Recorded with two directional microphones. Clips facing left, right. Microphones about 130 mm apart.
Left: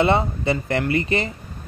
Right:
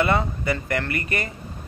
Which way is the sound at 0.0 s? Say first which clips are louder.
Left 3 dB; 25° left (ahead or behind).